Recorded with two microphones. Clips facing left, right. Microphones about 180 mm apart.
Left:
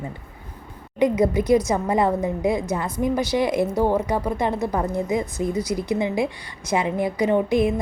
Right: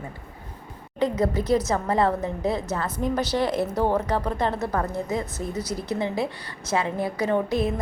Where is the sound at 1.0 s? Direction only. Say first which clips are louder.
Left 4 dB; 15° left (ahead or behind).